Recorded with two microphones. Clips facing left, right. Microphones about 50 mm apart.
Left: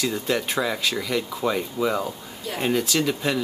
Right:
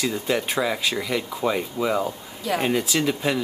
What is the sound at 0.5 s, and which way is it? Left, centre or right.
Speech, centre.